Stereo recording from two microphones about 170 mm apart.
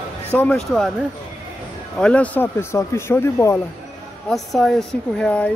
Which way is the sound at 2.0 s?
10° left (ahead or behind).